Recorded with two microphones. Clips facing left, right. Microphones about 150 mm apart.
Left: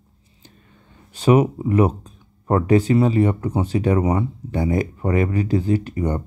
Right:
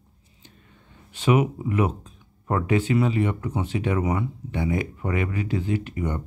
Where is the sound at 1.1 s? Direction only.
40° left (ahead or behind).